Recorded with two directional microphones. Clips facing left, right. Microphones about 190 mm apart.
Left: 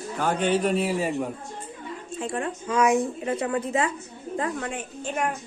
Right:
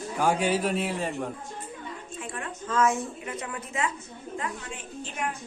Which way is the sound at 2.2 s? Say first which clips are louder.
Left 9 dB; 30° left (ahead or behind).